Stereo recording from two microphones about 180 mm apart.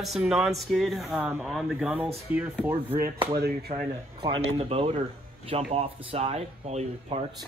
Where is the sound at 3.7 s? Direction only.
35° right (ahead or behind).